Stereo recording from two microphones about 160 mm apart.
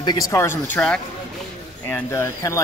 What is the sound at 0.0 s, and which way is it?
Speech, 25° left (ahead or behind).